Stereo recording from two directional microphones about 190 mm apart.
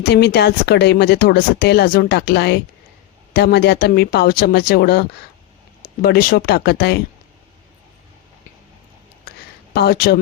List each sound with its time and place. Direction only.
0.1 s speech: 60° left (ahead or behind)
9.7 s speech: 55° left (ahead or behind)